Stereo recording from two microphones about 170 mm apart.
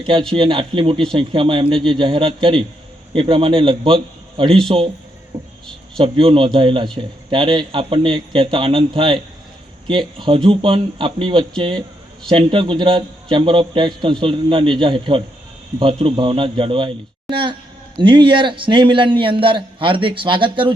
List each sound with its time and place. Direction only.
0.0 s a man's voice: 30° right (ahead or behind)
6.0 s a man's voice: 30° right (ahead or behind)